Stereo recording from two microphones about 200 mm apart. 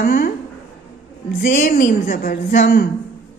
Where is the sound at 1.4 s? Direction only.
40° left (ahead or behind).